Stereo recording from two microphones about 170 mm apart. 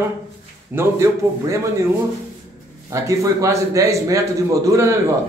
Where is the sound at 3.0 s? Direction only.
15° right (ahead or behind).